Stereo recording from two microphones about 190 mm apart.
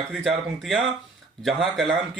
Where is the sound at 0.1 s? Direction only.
Centre (ahead or behind).